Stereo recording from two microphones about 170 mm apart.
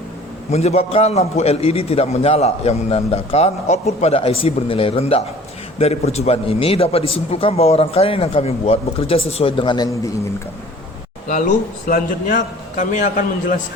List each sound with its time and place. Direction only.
0.5 s a man's voice: 40° left (ahead or behind); by 10.1 s 20° left (ahead or behind)
11.3 s a man's voice: 50° left (ahead or behind)